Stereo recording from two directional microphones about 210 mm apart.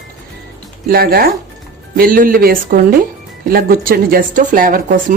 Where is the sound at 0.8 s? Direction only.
45° right (ahead or behind).